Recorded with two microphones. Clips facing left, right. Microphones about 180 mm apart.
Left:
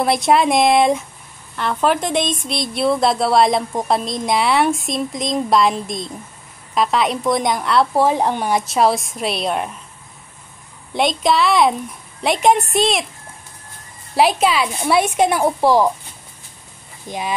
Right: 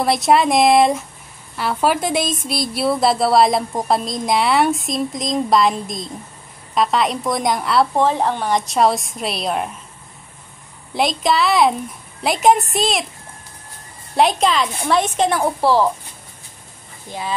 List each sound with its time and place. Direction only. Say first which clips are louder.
0.0 s a woman's voice: even; centre (ahead or behind)
8.0 s a woman's voice: left 1 dB; 15° left (ahead or behind)
10.9 s a woman's voice: left 1 dB; centre (ahead or behind)
14.1 s a woman's voice: even; 5° left (ahead or behind)
17.1 s a woman's voice: left 3 dB; 15° left (ahead or behind)